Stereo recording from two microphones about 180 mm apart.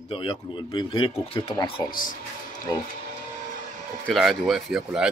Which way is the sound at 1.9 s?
50° left (ahead or behind).